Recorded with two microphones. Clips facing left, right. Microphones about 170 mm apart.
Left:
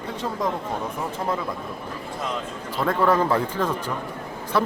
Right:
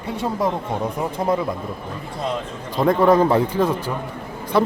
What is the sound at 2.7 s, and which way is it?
Speech, 15° right (ahead or behind).